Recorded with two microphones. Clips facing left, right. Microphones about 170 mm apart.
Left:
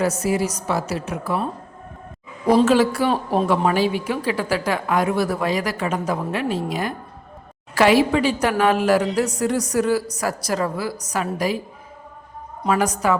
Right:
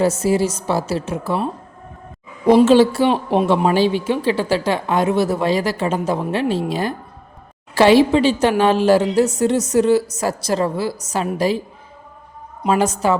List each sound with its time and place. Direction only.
0.0 s speech: 25° right (ahead or behind)
2.6 s speech: 25° right (ahead or behind)
12.6 s speech: 25° right (ahead or behind)